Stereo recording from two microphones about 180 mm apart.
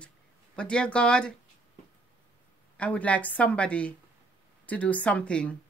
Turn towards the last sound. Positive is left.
turn(degrees=5)  # may be behind; listen again after turning